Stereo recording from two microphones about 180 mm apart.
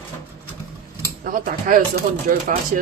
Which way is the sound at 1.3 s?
50° right (ahead or behind).